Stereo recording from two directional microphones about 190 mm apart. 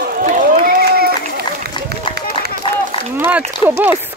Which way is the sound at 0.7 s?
50° right (ahead or behind).